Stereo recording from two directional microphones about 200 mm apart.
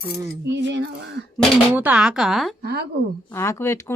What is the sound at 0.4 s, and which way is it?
Female singing, 60° right (ahead or behind).